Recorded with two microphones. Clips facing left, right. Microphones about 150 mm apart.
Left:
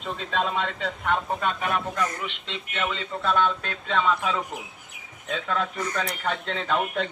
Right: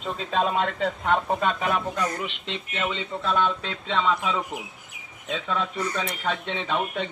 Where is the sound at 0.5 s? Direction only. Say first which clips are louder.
Right 4 dB; 50° right (ahead or behind).